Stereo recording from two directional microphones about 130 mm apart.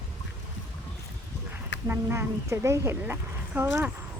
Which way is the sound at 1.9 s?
20° right (ahead or behind).